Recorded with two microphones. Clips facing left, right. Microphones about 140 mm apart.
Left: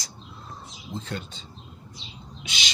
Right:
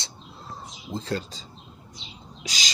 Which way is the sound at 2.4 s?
40° right (ahead or behind).